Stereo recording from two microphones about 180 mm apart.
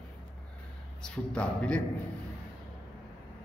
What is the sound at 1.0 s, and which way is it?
Speech, 5° left (ahead or behind).